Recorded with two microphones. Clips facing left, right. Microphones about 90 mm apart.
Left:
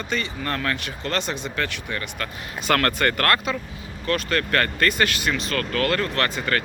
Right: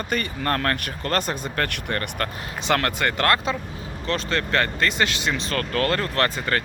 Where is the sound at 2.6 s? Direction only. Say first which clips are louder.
Left 2 dB; 15° right (ahead or behind).